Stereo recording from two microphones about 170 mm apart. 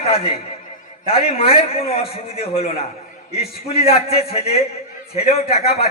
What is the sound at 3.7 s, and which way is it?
A man's voice, 35° left (ahead or behind).